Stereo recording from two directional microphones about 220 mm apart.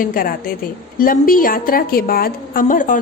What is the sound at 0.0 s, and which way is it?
A woman's voice, 40° left (ahead or behind).